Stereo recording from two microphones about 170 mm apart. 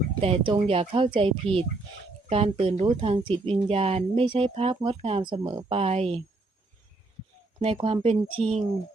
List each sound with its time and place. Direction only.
0.2 s speech: 35° right (ahead or behind)
7.6 s speech: 35° right (ahead or behind)